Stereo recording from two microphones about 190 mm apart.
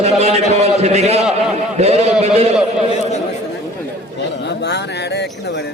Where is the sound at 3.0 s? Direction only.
35° left (ahead or behind).